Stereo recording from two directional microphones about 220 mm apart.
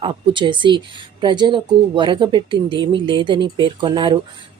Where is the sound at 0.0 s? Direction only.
20° right (ahead or behind).